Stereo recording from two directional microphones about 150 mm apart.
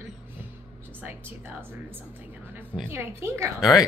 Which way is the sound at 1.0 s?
15° right (ahead or behind).